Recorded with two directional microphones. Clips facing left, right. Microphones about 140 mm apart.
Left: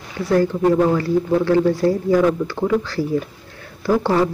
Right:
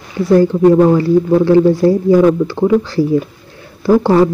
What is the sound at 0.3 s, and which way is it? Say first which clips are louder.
Speech: right 7 dB; 25° right (ahead or behind).